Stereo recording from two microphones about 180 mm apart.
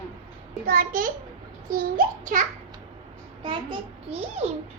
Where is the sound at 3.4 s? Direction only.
25° right (ahead or behind).